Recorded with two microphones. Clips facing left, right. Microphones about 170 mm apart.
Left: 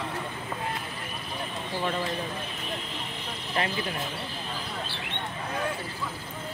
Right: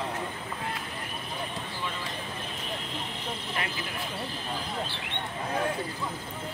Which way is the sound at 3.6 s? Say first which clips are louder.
Left 7 dB; 30° left (ahead or behind).